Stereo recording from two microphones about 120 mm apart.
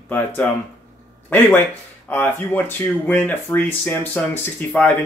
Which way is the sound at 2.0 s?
15° left (ahead or behind).